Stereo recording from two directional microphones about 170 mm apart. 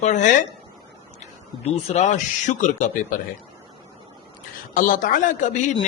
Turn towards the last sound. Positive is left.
turn(degrees=50)  # may be behind; listen again after turning